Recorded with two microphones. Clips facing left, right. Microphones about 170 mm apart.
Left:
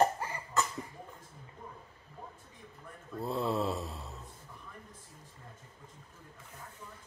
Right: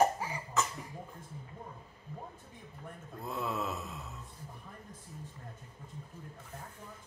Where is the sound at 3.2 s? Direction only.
30° left (ahead or behind).